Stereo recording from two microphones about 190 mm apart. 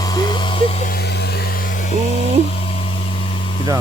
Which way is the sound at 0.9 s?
60° left (ahead or behind).